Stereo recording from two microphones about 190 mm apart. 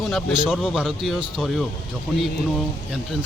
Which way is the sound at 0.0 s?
Centre (ahead or behind).